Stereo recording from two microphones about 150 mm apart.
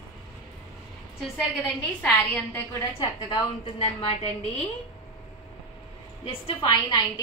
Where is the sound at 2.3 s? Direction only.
10° left (ahead or behind).